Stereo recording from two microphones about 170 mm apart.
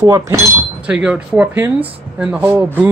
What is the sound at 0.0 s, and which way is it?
Speech, 20° right (ahead or behind).